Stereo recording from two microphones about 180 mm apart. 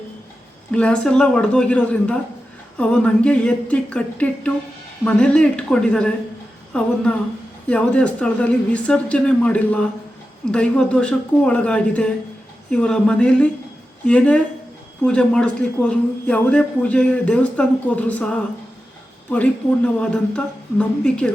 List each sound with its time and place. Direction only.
0.7 s a man's voice: 5° left (ahead or behind)